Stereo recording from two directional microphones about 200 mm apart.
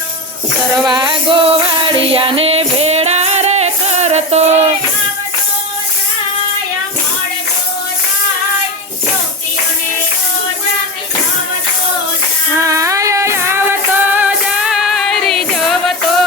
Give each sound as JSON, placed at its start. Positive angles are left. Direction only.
{"t": 0.9, "sound": "music", "side_deg": -20}
{"t": 12.5, "sound": "music", "side_deg": -15}